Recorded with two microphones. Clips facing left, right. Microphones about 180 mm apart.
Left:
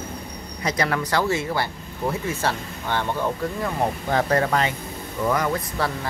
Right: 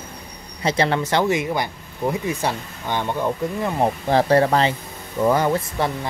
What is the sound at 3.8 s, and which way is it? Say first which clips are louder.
Speech: right 5 dB; 30° right (ahead or behind).